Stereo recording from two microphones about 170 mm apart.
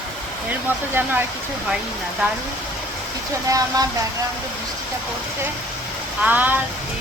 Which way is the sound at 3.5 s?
20° right (ahead or behind).